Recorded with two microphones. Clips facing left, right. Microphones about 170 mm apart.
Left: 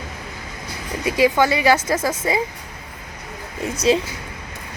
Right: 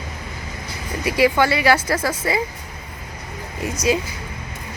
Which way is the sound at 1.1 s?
15° left (ahead or behind).